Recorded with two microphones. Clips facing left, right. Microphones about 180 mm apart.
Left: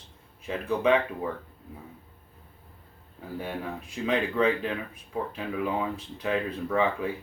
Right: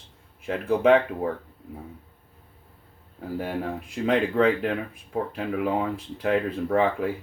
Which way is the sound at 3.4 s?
60° right (ahead or behind).